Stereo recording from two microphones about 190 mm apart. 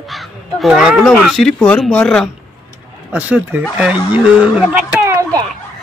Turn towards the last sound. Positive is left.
turn(degrees=-15)  # may be behind; listen again after turning